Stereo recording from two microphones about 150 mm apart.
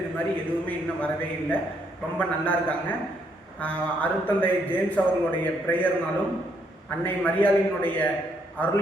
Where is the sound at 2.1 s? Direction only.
10° left (ahead or behind).